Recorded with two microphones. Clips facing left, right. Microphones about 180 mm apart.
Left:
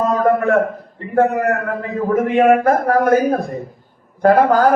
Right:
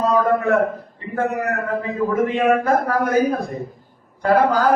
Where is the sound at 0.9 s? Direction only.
55° left (ahead or behind).